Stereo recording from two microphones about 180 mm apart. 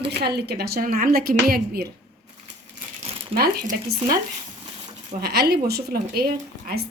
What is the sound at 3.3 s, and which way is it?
Speech, 55° right (ahead or behind).